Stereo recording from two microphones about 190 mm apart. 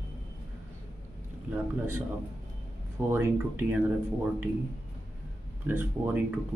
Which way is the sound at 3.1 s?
10° right (ahead or behind).